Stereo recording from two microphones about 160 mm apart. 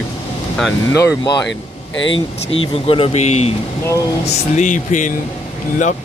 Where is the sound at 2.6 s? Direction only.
35° left (ahead or behind); by 5.1 s 50° left (ahead or behind).